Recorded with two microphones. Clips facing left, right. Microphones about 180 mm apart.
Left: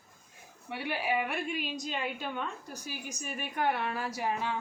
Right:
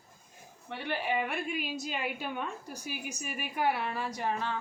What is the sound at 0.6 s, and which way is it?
A woman's voice, 10° left (ahead or behind).